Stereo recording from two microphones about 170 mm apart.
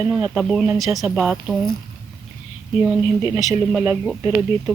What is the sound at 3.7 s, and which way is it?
Speech, 5° right (ahead or behind).